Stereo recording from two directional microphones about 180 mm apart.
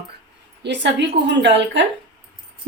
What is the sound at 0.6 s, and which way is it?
Speech, 75° right (ahead or behind).